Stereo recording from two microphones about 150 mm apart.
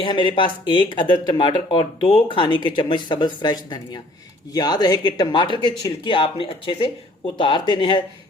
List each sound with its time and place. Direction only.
0.0 s speech: 35° left (ahead or behind)